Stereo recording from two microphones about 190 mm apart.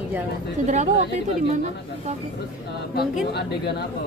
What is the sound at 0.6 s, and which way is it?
Speech, 40° right (ahead or behind).